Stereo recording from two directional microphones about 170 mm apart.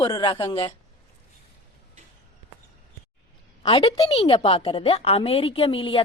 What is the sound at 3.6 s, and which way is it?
A woman's voice, 30° left (ahead or behind).